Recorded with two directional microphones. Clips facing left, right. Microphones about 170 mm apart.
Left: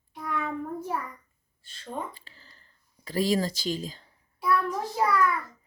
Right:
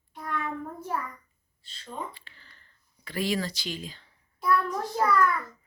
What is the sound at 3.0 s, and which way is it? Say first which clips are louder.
A woman's voice: left 4 dB; 40° left (ahead or behind).